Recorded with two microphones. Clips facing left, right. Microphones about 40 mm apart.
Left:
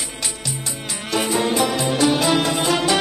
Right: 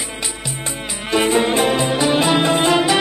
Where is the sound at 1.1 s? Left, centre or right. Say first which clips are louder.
Right 4 dB; right.